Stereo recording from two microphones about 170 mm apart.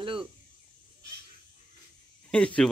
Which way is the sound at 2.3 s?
5° left (ahead or behind).